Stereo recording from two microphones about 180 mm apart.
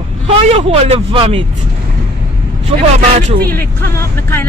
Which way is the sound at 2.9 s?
40° right (ahead or behind).